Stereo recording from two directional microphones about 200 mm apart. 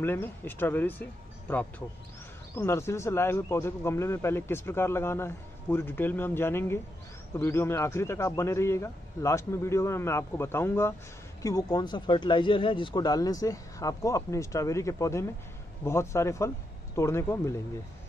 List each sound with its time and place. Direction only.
0.0 s speech: 10° left (ahead or behind)